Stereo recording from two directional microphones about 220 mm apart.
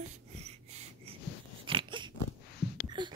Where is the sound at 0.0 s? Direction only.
30° right (ahead or behind).